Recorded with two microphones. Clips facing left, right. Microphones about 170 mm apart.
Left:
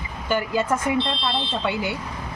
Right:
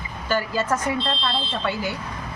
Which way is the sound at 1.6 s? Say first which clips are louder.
Even; 20° left (ahead or behind).